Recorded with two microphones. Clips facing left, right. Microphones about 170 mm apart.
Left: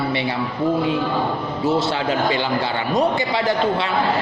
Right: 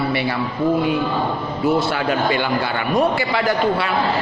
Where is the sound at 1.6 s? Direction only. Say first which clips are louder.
Right 2 dB; 25° left (ahead or behind).